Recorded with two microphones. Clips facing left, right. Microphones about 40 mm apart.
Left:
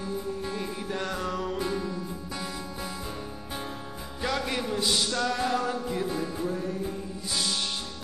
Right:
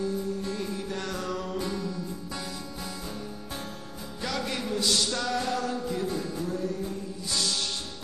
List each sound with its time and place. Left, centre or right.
0.4 s music: centre
4.2 s music: centre